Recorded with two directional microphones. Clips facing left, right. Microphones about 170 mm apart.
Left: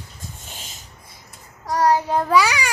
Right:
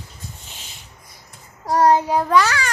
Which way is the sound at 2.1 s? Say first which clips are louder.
Right 1 dB; 5° right (ahead or behind).